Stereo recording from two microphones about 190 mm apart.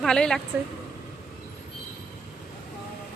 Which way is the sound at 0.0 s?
5° left (ahead or behind).